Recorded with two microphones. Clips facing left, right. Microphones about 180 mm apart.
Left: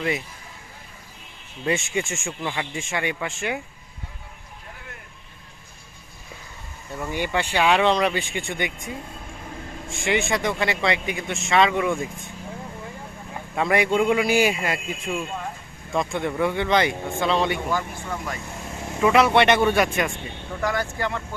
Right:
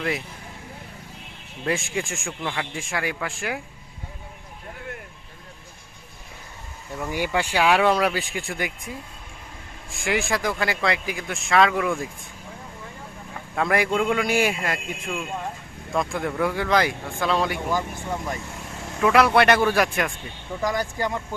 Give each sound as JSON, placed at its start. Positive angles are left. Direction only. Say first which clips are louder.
{"t": 1.6, "sound": "speech", "louder": "left 2 dB", "side_deg": 0}
{"t": 6.9, "sound": "speech", "louder": "even", "side_deg": -10}
{"t": 13.6, "sound": "speech", "louder": "left 2 dB", "side_deg": 0}
{"t": 17.7, "sound": "speech", "louder": "right 1 dB", "side_deg": -15}
{"t": 18.9, "sound": "speech", "louder": "even", "side_deg": 0}
{"t": 20.6, "sound": "speech", "louder": "even", "side_deg": -15}